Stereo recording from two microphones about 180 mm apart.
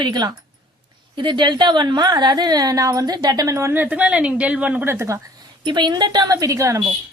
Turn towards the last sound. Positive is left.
turn(degrees=-15)  # may be behind; listen again after turning